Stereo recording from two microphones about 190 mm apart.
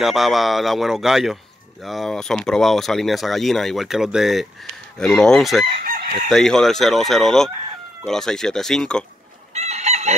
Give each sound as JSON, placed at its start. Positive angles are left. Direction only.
{"t": 0.0, "sound": "speech", "side_deg": 0}
{"t": 9.5, "sound": "chicken", "side_deg": -35}